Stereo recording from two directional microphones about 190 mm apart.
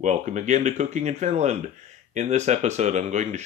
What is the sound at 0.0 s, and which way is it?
Speech, 40° right (ahead or behind).